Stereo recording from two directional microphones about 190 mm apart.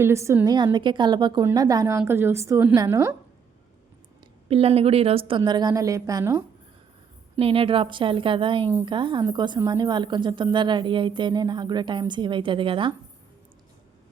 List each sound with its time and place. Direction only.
0.0 s a woman's voice: 15° right (ahead or behind)
4.4 s a woman's voice: 30° right (ahead or behind)
7.3 s a woman's voice: 30° right (ahead or behind)